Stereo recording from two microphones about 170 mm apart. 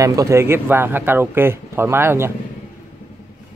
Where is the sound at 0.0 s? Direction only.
20° right (ahead or behind).